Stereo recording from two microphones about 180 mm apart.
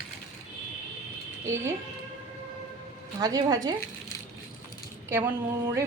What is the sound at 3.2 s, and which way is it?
Speech, 20° right (ahead or behind).